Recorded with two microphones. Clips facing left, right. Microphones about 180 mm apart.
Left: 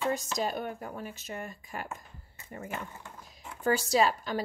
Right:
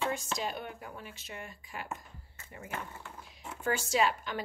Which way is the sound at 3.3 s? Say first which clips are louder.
Left 5 dB; 40° left (ahead or behind).